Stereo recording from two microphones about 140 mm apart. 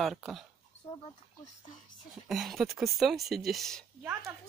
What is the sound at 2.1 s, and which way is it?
Speech, centre (ahead or behind).